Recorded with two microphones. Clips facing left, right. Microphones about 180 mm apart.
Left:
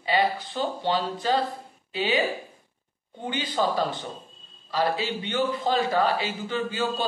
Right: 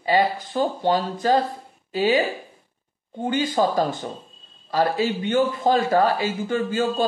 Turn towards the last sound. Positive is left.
turn(degrees=-45)  # may be behind; listen again after turning